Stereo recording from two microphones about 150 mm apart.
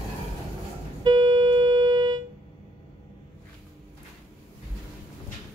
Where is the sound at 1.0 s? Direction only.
30° right (ahead or behind).